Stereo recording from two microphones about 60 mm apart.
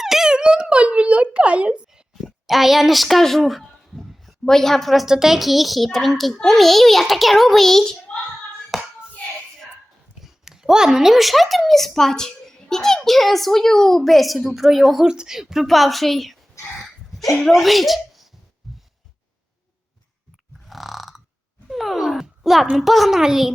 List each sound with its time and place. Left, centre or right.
0.0 s a sound: centre
2.5 s a woman's voice: centre
8.7 s hands: centre
10.2 s speech: centre
15.0 s a woman's voice: centre
17.5 s a child's voice: centre
20.7 s burping: centre
21.7 s a sound: centre
22.7 s a woman's voice: centre